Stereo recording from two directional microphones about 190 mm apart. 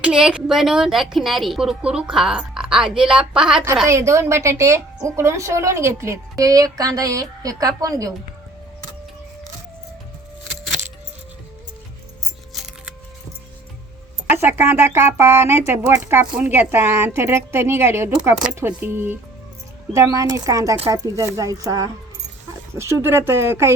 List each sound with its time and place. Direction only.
0.0 s a woman's voice: 5° right (ahead or behind)
3.8 s speech: 15° right (ahead or behind)
14.4 s speech: 10° right (ahead or behind)